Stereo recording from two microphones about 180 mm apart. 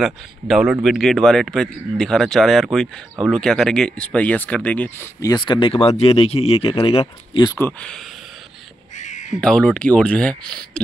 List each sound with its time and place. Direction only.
0.0 s speech: centre (ahead or behind); by 7.5 s 30° left (ahead or behind)
7.5 s speech: 10° left (ahead or behind)
8.9 s crow: 40° left (ahead or behind)
9.3 s speech: 5° left (ahead or behind)